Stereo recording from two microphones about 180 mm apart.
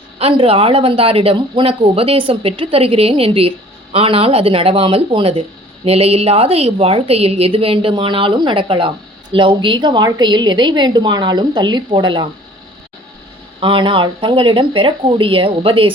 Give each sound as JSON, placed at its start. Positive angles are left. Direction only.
{"t": 0.2, "sound": "a woman's voice", "side_deg": -35}
{"t": 13.6, "sound": "a woman's voice", "side_deg": -30}